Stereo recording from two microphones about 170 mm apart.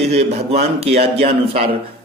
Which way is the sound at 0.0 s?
40° right (ahead or behind).